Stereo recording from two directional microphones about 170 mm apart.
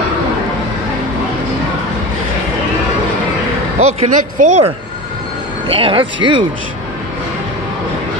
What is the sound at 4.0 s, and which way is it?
Speech, 40° right (ahead or behind).